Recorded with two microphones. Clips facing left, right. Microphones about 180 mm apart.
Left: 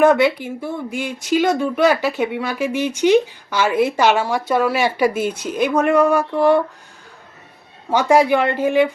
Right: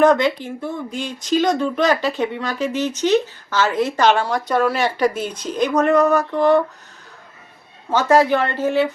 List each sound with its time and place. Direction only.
0.0 s speech: 10° left (ahead or behind)
7.9 s speech: 10° left (ahead or behind)